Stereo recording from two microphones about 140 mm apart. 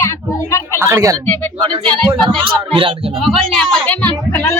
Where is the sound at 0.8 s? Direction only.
25° right (ahead or behind).